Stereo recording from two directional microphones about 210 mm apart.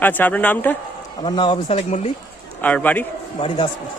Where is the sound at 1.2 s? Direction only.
25° left (ahead or behind).